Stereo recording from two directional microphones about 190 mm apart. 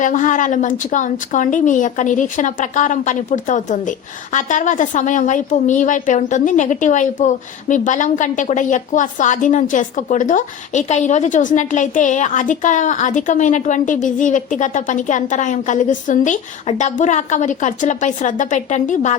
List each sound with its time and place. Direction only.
0.0 s a woman's voice: 40° left (ahead or behind)